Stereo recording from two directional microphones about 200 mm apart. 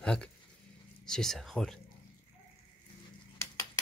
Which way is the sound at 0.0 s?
5° left (ahead or behind).